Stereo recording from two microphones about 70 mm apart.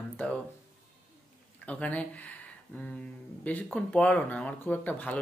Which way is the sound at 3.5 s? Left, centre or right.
Centre.